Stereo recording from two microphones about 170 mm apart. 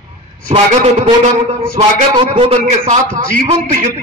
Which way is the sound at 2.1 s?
30° right (ahead or behind).